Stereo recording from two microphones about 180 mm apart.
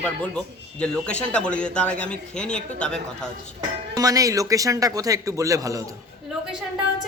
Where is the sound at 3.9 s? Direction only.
20° right (ahead or behind).